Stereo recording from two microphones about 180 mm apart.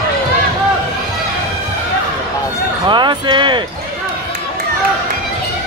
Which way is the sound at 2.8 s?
25° right (ahead or behind).